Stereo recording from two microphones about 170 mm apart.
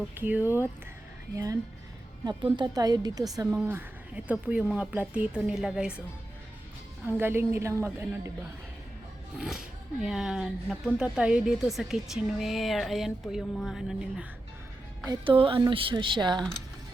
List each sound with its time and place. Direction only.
0.1 s a woman's voice: 10° right (ahead or behind)
2.2 s a woman's voice: 25° right (ahead or behind); by 6.0 s 5° right (ahead or behind)
7.2 s a woman's voice: 15° right (ahead or behind)
9.4 s speech: 5° right (ahead or behind)
15.0 s speech: 25° right (ahead or behind)